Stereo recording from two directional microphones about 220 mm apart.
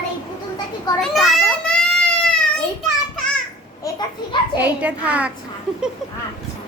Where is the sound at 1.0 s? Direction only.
Centre (ahead or behind).